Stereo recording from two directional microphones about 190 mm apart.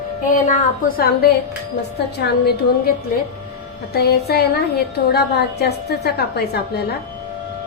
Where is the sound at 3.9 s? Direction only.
55° left (ahead or behind).